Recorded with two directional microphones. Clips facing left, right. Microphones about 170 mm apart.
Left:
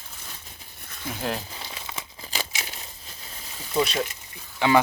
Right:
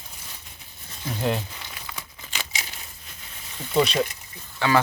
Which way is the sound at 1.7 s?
25° left (ahead or behind).